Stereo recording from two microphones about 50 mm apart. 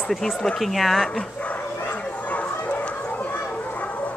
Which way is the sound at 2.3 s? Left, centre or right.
Left.